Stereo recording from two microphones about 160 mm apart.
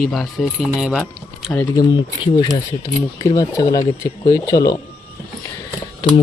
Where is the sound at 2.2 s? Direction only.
25° left (ahead or behind).